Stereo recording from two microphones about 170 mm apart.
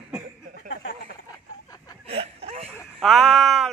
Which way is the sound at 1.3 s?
20° left (ahead or behind).